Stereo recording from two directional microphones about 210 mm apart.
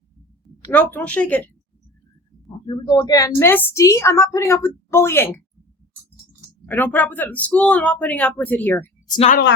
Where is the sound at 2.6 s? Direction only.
20° left (ahead or behind).